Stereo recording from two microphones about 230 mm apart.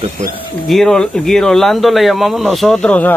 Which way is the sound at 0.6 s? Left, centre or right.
Centre.